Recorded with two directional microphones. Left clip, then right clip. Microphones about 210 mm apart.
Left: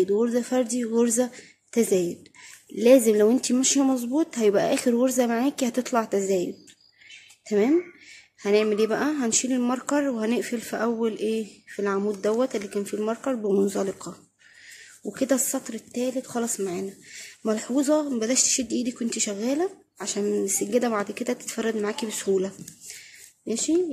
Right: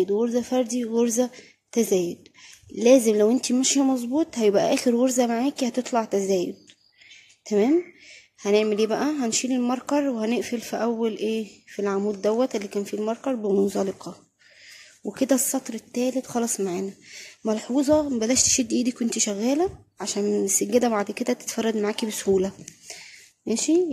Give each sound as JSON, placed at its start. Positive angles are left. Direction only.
{"t": 0.0, "sound": "a woman's voice", "side_deg": -5}